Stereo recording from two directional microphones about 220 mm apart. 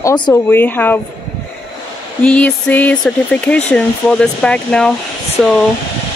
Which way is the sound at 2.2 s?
5° left (ahead or behind).